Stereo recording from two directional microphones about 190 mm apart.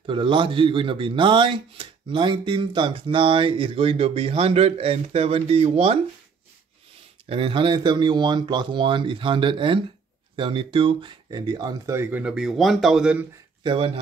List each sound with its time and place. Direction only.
0.0 s speech: 25° right (ahead or behind)
7.2 s speech: 30° right (ahead or behind); by 13.2 s 5° right (ahead or behind)
13.7 s speech: 30° right (ahead or behind)